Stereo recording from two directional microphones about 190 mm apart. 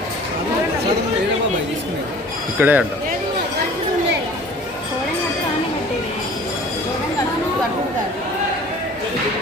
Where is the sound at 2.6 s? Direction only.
10° right (ahead or behind).